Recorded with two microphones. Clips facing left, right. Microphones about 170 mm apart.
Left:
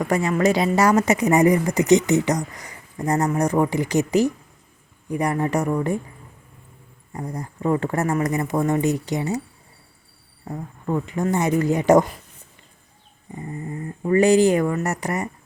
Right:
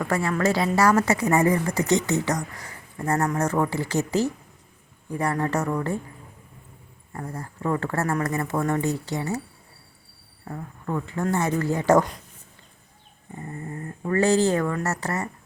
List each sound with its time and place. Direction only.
0.0 s a woman's voice: 20° left (ahead or behind)
7.1 s a woman's voice: 15° left (ahead or behind)
10.4 s a woman's voice: 15° left (ahead or behind)
13.3 s a woman's voice: 15° left (ahead or behind)